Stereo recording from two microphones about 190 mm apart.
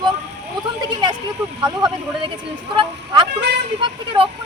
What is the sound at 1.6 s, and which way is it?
Speech, 20° right (ahead or behind).